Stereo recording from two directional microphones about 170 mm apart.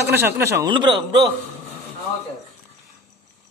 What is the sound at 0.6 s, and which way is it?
Speech, 25° right (ahead or behind).